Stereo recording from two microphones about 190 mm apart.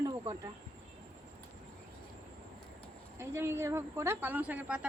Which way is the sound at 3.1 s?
15° right (ahead or behind).